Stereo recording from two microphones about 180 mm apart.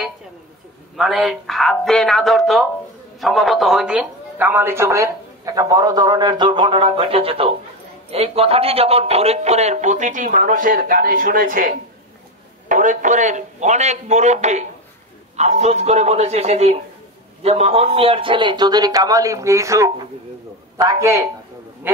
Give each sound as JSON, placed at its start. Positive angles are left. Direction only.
{"t": 0.9, "sound": "a man's voice", "side_deg": 0}